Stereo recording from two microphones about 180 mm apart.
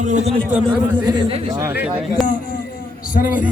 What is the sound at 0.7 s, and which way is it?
Speech, 25° right (ahead or behind).